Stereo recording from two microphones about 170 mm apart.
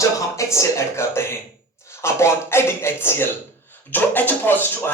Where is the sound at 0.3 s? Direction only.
15° left (ahead or behind).